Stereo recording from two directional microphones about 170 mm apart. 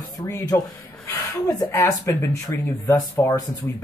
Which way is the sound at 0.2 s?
20° left (ahead or behind).